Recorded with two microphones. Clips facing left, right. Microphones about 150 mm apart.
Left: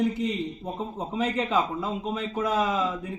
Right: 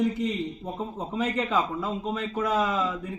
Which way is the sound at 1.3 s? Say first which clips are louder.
Left 1 dB; 25° left (ahead or behind).